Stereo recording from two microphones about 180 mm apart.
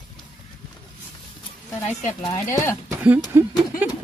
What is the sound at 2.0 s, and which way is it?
Speech, 40° left (ahead or behind).